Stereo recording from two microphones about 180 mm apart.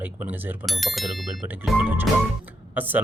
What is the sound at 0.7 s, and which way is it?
Speech, centre (ahead or behind).